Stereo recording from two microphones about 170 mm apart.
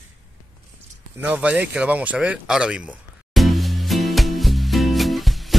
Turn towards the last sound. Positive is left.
turn(degrees=0)  # may be behind; listen again after turning